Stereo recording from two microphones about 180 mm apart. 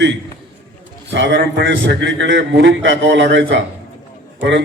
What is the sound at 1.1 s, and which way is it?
Speech, 75° right (ahead or behind).